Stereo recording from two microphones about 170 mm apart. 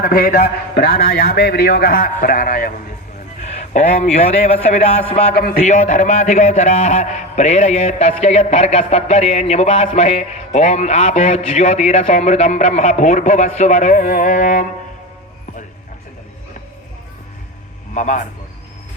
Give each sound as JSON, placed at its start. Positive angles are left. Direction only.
{"t": 0.0, "sound": "speech", "side_deg": 60}
{"t": 4.4, "sound": "a man's voice", "side_deg": 35}
{"t": 17.9, "sound": "a man's voice", "side_deg": 45}